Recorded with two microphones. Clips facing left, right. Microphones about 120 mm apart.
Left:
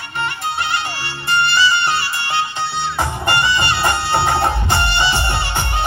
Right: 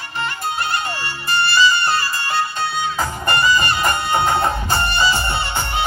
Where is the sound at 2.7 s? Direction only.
75° left (ahead or behind).